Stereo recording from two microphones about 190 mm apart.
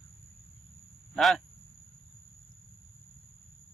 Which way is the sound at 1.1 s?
Centre (ahead or behind).